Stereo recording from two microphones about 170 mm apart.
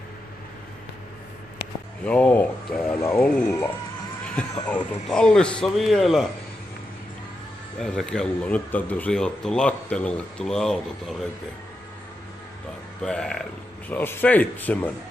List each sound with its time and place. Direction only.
2.0 s speech: 10° left (ahead or behind)
3.4 s speech: 15° left (ahead or behind)
4.4 s speech: 5° left (ahead or behind)
7.8 s speech: 5° left (ahead or behind)
13.0 s speech: 5° left (ahead or behind)